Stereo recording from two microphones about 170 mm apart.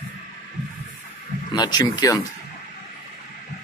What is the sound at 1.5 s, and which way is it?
Speech, 25° left (ahead or behind).